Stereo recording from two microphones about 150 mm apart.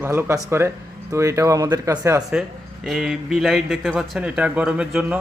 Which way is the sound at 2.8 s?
5° right (ahead or behind).